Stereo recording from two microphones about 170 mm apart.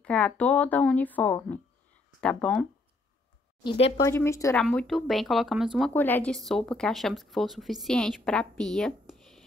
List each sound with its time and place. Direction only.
0.0 s a woman's voice: 5° left (ahead or behind)
3.6 s speech: 35° left (ahead or behind)
4.0 s a woman's voice: 15° left (ahead or behind)
4.6 s speech: 5° left (ahead or behind)
5.9 s speech: 10° left (ahead or behind)